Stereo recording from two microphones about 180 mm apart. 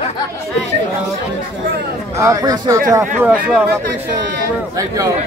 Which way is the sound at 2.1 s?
20° right (ahead or behind).